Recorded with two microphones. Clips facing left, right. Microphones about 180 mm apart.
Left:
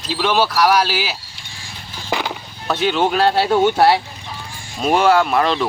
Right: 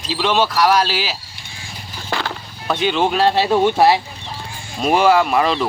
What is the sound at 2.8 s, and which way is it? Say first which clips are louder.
Speech: even; centre (ahead or behind).